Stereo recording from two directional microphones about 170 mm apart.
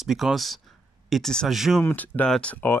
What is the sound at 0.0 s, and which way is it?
Speech, centre (ahead or behind).